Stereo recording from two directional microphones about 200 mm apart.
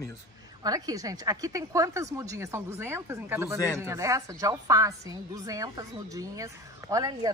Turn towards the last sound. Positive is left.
turn(degrees=-20)  # may be behind; listen again after turning